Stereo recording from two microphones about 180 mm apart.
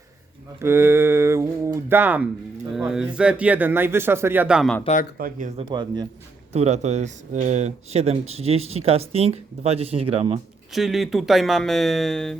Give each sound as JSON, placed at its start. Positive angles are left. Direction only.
{"t": 0.6, "sound": "speech", "side_deg": -15}
{"t": 5.1, "sound": "speech", "side_deg": -55}
{"t": 5.5, "sound": "speech", "side_deg": -25}
{"t": 6.5, "sound": "speech", "side_deg": -40}
{"t": 10.7, "sound": "speech", "side_deg": 0}